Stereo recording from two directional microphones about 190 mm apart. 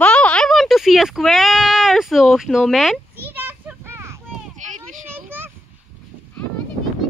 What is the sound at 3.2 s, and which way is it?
Children playing, 10° right (ahead or behind).